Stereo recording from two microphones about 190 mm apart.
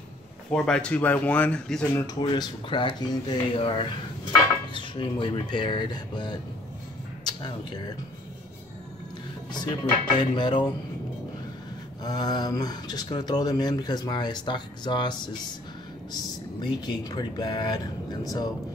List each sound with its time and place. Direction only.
0.5 s speech: 5° left (ahead or behind)
2.0 s speech: 20° left (ahead or behind)
9.5 s speech: 25° left (ahead or behind)
12.0 s speech: 20° left (ahead or behind)
16.6 s speech: 20° left (ahead or behind)